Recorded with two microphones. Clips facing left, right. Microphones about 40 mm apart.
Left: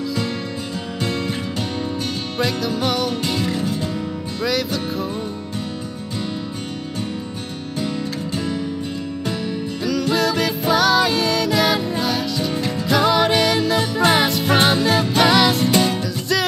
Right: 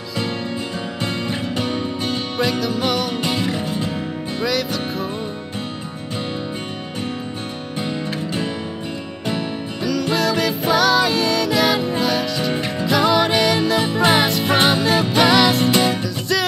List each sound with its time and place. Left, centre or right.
1.0 s music: centre
2.3 s music: centre
3.2 s music: centre
4.5 s music: centre
7.8 s music: right
9.8 s music: centre
12.5 s music: right
12.8 s music: centre